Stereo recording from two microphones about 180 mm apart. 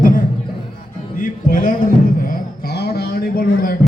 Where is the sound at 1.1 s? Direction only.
50° left (ahead or behind).